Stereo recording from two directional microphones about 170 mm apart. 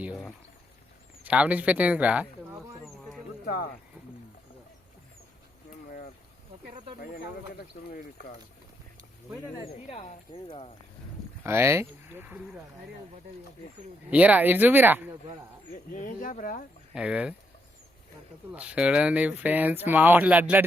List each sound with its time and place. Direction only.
0.0 s speech: 5° right (ahead or behind)
2.8 s a sound: centre (ahead or behind)
3.4 s speech: 60° left (ahead or behind)
7.9 s speech: 60° left (ahead or behind)
9.6 s speech: 35° left (ahead or behind)
11.4 s speech: 15° right (ahead or behind)
14.1 s speech: 10° right (ahead or behind)
15.9 s speech: 55° left (ahead or behind)
16.9 s speech: 5° right (ahead or behind)
18.5 s speech: 5° right (ahead or behind)